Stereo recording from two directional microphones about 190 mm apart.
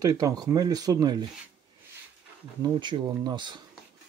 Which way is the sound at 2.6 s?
25° right (ahead or behind).